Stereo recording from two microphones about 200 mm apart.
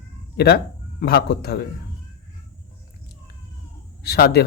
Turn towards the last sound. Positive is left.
turn(degrees=55)  # may be behind; listen again after turning